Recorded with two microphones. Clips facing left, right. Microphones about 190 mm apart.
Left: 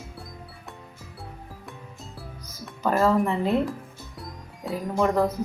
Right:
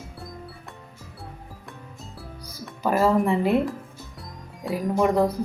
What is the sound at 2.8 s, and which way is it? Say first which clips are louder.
Speech: right 1 dB; 15° right (ahead or behind).